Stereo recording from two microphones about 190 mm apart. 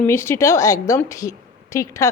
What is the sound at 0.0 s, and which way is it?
A woman's voice, 15° left (ahead or behind).